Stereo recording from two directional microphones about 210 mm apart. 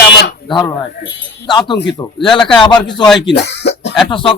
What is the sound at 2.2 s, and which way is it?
Speech, centre (ahead or behind).